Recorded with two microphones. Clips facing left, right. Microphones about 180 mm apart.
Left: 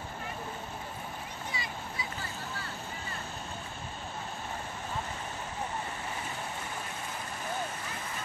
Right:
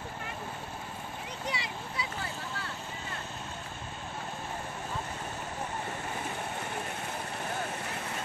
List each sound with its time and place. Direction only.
1.4 s vehicle: 75° right (ahead or behind)